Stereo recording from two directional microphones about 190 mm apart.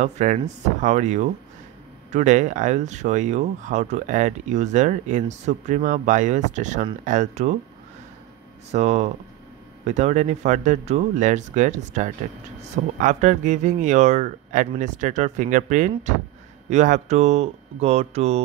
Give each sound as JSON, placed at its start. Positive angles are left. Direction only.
{"t": 0.0, "sound": "speech", "side_deg": -40}
{"t": 8.7, "sound": "speech", "side_deg": -35}